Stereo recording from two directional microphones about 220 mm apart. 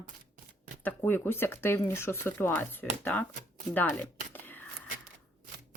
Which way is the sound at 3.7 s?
10° left (ahead or behind).